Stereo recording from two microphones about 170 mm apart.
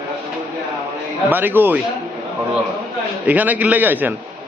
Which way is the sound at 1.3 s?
10° right (ahead or behind).